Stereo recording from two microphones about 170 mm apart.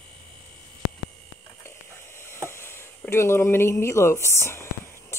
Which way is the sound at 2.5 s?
15° left (ahead or behind).